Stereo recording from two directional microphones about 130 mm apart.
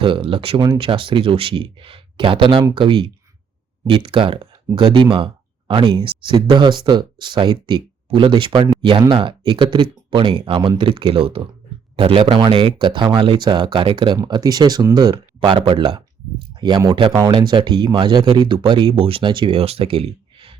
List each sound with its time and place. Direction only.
0.0 s speech: 40° right (ahead or behind)
15.1 s speech: 40° right (ahead or behind)